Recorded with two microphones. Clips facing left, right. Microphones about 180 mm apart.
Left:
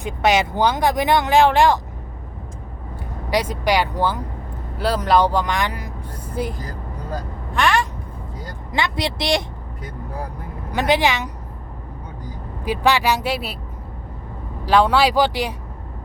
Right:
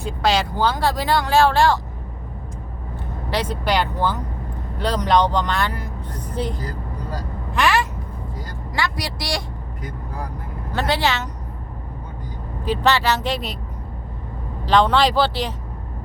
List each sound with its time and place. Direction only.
0.0 s speech: 20° left (ahead or behind)
3.2 s speech: 10° left (ahead or behind)
7.5 s a sound: 5° right (ahead or behind)
8.7 s speech: 20° left (ahead or behind)
10.7 s speech: 15° left (ahead or behind)
12.6 s speech: 10° left (ahead or behind)
14.6 s speech: 10° left (ahead or behind)